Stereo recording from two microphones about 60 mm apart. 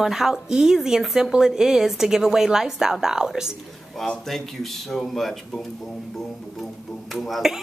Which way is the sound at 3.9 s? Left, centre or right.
Centre.